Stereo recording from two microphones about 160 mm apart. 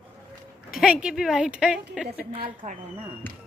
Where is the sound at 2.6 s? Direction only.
50° right (ahead or behind).